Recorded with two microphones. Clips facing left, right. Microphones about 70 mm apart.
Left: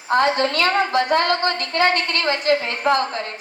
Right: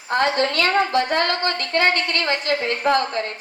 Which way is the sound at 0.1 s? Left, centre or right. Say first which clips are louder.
Left 2 dB; left.